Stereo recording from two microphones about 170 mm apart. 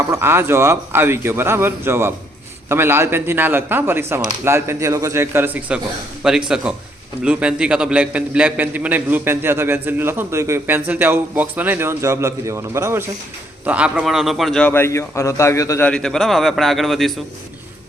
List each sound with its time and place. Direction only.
0.1 s a man's voice: 15° right (ahead or behind); by 14.7 s centre (ahead or behind)
14.7 s a man's voice: 15° left (ahead or behind)
15.9 s a man's voice: 5° left (ahead or behind)